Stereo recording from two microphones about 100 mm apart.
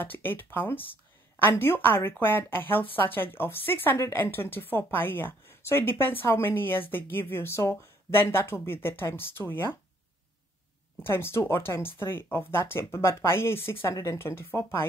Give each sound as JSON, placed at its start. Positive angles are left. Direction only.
{"t": 0.0, "sound": "speech", "side_deg": 20}
{"t": 11.0, "sound": "speech", "side_deg": 25}